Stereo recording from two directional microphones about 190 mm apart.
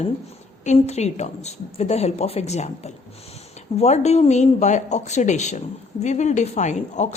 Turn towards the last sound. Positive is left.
turn(degrees=40)  # may be behind; listen again after turning